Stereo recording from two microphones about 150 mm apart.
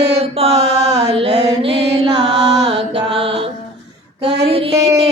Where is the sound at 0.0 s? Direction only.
40° right (ahead or behind).